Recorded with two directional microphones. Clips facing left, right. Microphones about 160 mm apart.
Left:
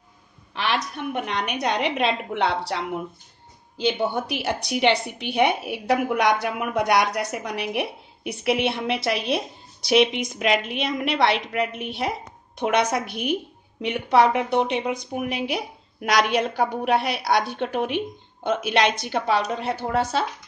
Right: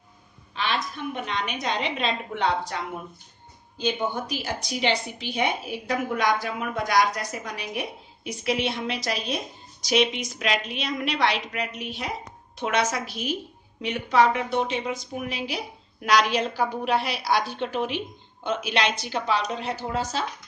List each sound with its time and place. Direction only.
0.6 s a woman's voice: 70° left (ahead or behind)